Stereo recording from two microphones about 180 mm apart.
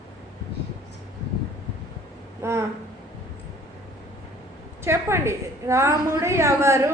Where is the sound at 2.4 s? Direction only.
15° right (ahead or behind).